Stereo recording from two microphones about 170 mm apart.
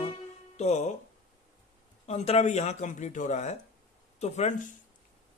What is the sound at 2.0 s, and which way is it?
A man's voice, 40° left (ahead or behind).